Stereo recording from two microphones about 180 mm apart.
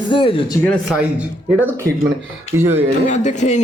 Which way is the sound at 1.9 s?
60° right (ahead or behind).